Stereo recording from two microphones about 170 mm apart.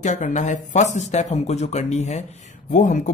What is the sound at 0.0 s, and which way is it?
Speech, 45° left (ahead or behind).